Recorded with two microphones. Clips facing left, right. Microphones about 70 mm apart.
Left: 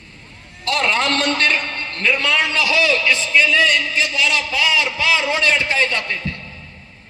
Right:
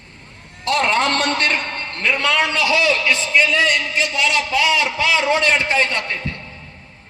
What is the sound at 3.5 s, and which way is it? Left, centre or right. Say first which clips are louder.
Speech: left 1 dB; right.